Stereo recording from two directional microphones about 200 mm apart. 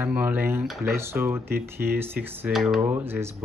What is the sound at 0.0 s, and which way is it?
Speech, 10° right (ahead or behind).